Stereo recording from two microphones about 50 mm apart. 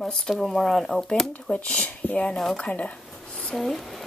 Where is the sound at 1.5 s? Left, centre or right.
Left.